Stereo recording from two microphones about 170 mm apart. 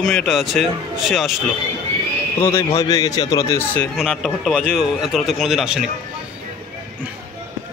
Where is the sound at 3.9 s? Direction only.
Centre (ahead or behind).